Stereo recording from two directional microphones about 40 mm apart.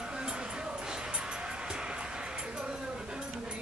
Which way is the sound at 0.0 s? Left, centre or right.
Centre.